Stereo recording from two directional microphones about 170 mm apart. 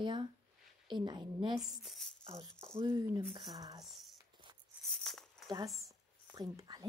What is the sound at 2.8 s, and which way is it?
Speech, 20° right (ahead or behind).